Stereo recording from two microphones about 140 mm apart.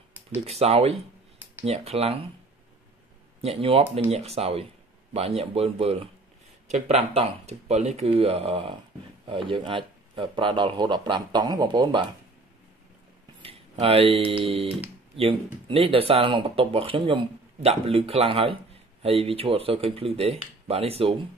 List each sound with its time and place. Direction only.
0.5 s speech: 45° right (ahead or behind)
3.3 s speech: 45° right (ahead or behind)
13.4 s speech: 40° right (ahead or behind)